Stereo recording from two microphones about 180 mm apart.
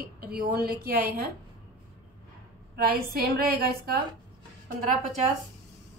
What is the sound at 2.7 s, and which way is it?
A woman's voice, 60° right (ahead or behind).